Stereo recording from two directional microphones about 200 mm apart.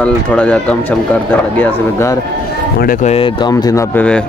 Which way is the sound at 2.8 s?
40° left (ahead or behind).